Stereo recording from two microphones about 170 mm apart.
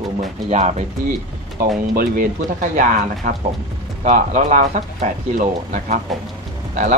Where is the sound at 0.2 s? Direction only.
45° right (ahead or behind).